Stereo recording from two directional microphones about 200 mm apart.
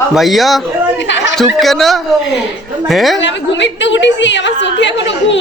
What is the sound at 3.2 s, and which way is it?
A woman's voice, 65° left (ahead or behind).